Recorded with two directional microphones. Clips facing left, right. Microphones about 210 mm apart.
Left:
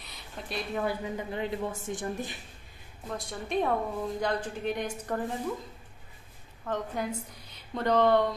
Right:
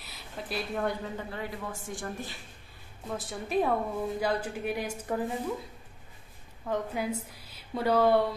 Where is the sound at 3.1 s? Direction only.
5° right (ahead or behind).